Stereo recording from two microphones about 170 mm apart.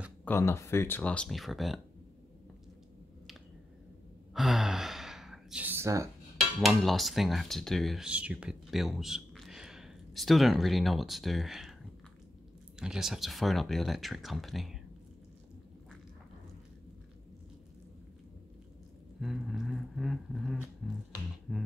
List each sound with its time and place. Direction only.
0.2 s speech: 15° left (ahead or behind)
4.3 s sigh: centre (ahead or behind)
6.6 s speech: centre (ahead or behind)
12.7 s speech: 5° right (ahead or behind)
19.1 s speech: centre (ahead or behind)